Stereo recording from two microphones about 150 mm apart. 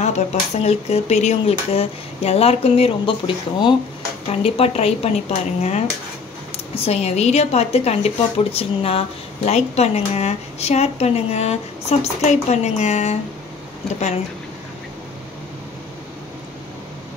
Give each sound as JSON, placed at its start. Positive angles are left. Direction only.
{"t": 0.0, "sound": "speech", "side_deg": 50}
{"t": 4.3, "sound": "speech", "side_deg": 45}